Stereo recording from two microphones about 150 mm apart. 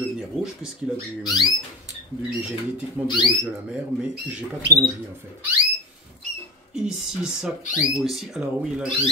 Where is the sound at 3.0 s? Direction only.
30° left (ahead or behind).